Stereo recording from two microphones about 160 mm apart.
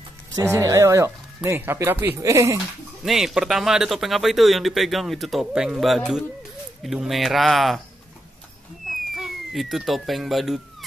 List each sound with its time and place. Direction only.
0.4 s speech: 20° right (ahead or behind)
3.0 s speech: centre (ahead or behind)
9.1 s speech: centre (ahead or behind)